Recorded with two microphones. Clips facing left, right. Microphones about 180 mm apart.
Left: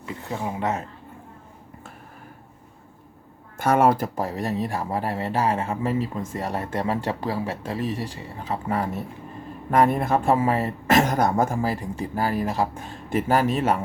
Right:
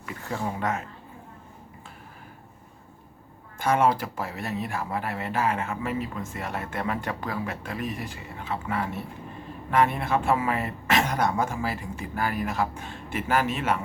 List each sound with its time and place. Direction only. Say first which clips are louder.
0.0 s speech: left 1 dB; 20° left (ahead or behind)
3.6 s speech: left 4 dB; 50° left (ahead or behind)